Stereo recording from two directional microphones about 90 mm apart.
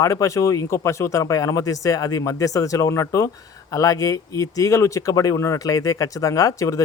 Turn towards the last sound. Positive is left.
turn(degrees=40)  # may be behind; listen again after turning